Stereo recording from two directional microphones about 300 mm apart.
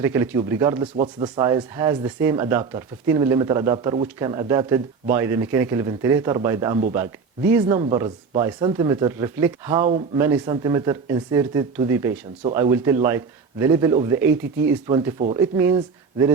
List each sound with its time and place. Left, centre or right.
0.0 s speech: centre
0.9 s speech: right
1.4 s speech: centre